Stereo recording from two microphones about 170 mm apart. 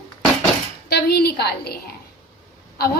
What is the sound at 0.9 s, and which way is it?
Speech, 70° left (ahead or behind).